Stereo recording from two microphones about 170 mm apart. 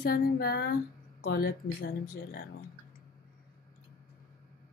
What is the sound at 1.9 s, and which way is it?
Speech, 65° left (ahead or behind).